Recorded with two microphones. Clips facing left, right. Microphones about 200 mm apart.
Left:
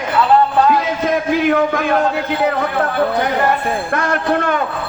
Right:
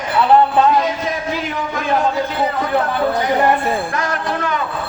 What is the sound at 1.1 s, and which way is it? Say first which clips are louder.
Speech: left 8 dB; 60° left (ahead or behind).